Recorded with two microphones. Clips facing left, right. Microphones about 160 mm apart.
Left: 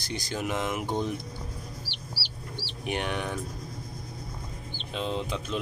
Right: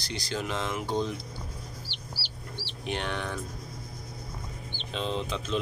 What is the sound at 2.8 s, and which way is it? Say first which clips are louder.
Speech: left 2 dB; 15° left (ahead or behind).